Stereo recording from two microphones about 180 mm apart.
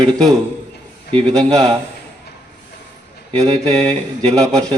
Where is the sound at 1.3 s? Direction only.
Centre (ahead or behind).